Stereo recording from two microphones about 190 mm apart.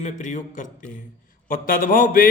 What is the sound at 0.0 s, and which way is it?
Speech, 40° left (ahead or behind).